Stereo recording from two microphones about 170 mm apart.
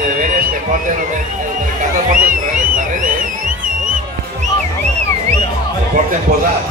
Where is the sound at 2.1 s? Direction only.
50° right (ahead or behind).